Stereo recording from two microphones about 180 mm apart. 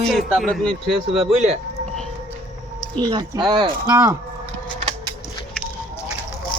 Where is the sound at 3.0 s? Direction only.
25° right (ahead or behind).